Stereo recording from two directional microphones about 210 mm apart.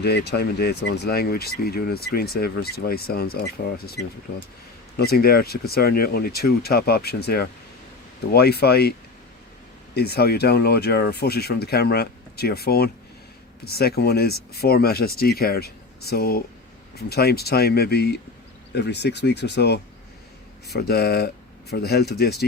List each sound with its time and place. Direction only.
0.0 s speech: 50° left (ahead or behind)
4.3 s speech: 55° left (ahead or behind)
9.9 s speech: 50° left (ahead or behind)